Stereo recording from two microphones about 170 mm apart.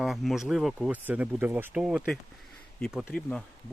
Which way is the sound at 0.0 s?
Centre (ahead or behind).